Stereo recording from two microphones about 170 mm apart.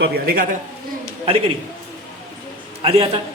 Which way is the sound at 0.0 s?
60° right (ahead or behind).